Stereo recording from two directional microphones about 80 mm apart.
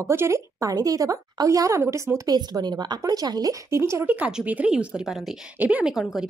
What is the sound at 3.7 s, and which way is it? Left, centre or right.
Speech, right.